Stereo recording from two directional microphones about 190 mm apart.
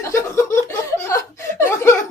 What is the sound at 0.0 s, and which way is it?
Chuckle, 15° left (ahead or behind).